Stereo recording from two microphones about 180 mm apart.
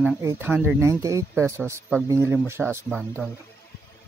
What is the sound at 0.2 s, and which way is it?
Speech, 15° right (ahead or behind).